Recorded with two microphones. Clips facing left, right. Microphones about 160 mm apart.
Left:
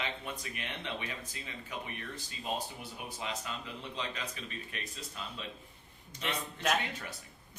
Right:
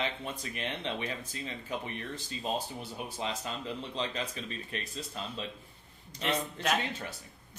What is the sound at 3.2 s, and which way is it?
Speech, 30° right (ahead or behind).